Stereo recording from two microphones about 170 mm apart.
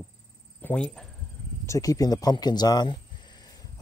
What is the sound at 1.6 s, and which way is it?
Speech, 20° left (ahead or behind).